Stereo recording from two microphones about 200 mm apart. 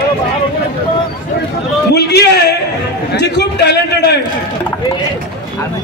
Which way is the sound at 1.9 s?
55° left (ahead or behind).